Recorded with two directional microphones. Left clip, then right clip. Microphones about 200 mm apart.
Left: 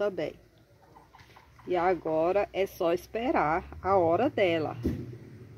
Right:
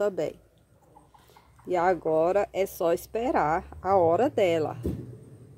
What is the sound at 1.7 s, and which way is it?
A woman's voice, 20° right (ahead or behind).